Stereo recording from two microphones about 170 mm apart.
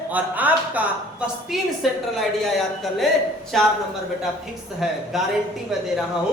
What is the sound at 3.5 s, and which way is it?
Speech, centre (ahead or behind).